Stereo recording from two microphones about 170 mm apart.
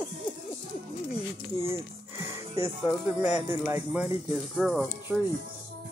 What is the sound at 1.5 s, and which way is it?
Speech, 15° right (ahead or behind).